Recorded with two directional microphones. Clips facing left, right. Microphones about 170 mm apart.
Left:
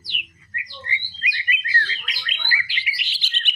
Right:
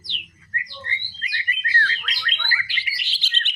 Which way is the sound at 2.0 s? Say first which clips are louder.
Right 1 dB; 15° left (ahead or behind).